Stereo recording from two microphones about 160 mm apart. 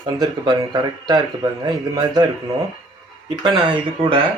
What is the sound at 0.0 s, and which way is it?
Speech, 25° right (ahead or behind).